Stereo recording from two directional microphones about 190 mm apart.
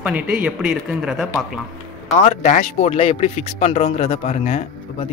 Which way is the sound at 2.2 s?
40° left (ahead or behind).